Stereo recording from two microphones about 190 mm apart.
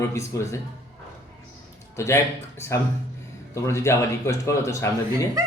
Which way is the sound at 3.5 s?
15° left (ahead or behind).